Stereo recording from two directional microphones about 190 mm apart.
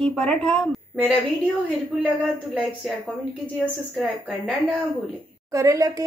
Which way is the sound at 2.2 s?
5° right (ahead or behind).